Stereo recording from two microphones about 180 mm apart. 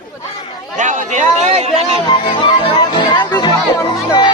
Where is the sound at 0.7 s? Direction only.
45° right (ahead or behind).